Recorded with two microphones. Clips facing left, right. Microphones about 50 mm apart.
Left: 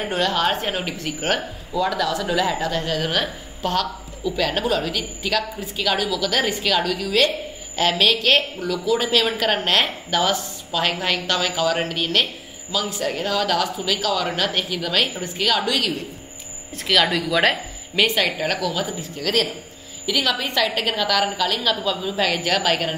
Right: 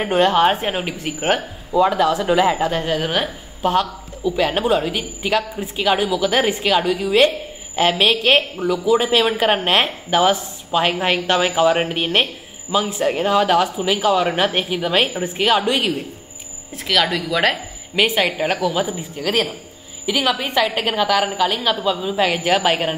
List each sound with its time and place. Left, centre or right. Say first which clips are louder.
0.0 s a woman's voice: right 6 dB; right
1.7 s a woman's voice: right 6 dB; right
16.7 s speech: even; centre
17.9 s a woman's voice: right 2 dB; centre